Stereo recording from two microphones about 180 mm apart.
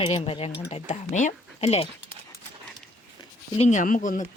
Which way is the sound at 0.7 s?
45° left (ahead or behind).